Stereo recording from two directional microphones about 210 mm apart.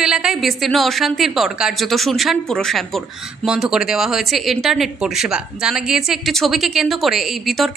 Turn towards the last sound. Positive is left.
turn(degrees=0)  # may be behind; listen again after turning